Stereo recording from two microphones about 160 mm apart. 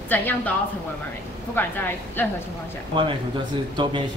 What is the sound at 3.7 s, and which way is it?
Speech, 30° right (ahead or behind).